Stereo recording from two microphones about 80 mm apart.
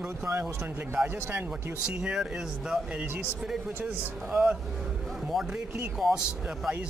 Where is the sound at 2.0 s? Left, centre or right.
Centre.